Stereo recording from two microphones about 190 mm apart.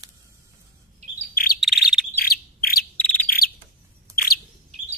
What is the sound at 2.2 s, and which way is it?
Bird, 50° left (ahead or behind).